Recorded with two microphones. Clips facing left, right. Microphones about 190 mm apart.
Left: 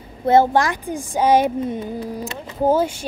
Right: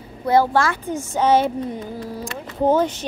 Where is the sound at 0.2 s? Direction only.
25° left (ahead or behind).